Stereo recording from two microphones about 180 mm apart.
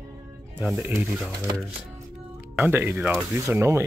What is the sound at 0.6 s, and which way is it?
Speech, 10° right (ahead or behind).